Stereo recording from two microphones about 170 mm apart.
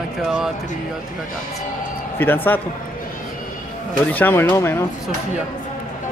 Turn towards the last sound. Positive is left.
turn(degrees=15)  # may be behind; listen again after turning